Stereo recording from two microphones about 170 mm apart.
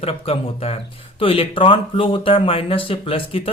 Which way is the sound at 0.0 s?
35° left (ahead or behind).